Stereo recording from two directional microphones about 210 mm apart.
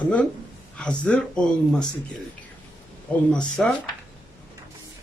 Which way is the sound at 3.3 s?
Centre (ahead or behind).